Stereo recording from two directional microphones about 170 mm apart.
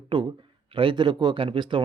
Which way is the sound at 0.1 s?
30° right (ahead or behind).